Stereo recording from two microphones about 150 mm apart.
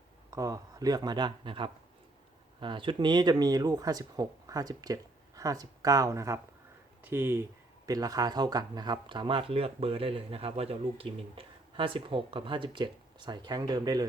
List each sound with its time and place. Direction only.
0.3 s speech: 20° right (ahead or behind)